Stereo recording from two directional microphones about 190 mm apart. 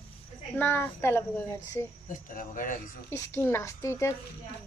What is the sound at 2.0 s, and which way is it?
Speech, 45° left (ahead or behind).